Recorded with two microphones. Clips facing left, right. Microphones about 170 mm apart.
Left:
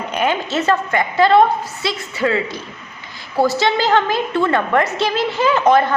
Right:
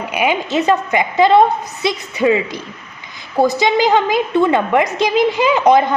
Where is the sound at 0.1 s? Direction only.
10° right (ahead or behind).